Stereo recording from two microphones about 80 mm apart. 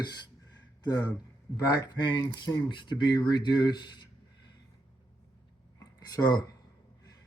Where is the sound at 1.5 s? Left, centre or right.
Left.